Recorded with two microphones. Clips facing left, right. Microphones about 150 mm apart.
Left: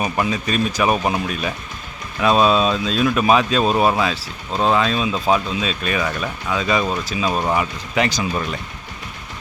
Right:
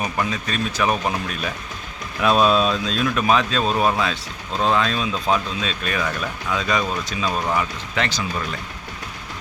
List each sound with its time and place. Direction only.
0.0 s speech: 10° left (ahead or behind)
7.3 s speech: 20° left (ahead or behind)